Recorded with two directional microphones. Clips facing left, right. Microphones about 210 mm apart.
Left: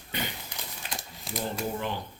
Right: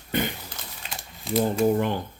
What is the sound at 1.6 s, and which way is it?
Speech, 50° right (ahead or behind).